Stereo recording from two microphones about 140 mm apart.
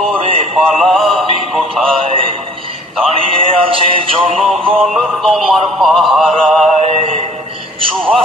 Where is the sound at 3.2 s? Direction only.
40° right (ahead or behind).